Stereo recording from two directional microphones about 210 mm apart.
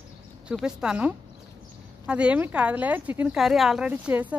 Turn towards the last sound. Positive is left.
turn(degrees=-10)  # may be behind; listen again after turning